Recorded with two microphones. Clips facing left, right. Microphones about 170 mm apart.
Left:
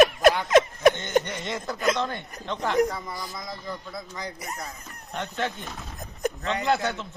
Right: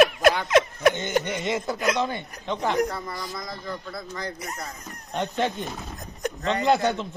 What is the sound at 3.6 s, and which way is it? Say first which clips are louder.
Speech: right 2 dB; 15° left (ahead or behind).